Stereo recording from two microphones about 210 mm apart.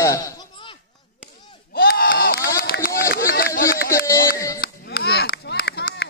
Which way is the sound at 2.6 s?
45° left (ahead or behind).